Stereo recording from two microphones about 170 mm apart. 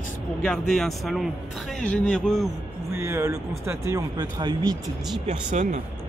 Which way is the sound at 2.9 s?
15° right (ahead or behind).